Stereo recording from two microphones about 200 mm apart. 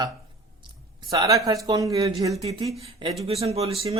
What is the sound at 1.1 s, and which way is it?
Speech, 15° right (ahead or behind).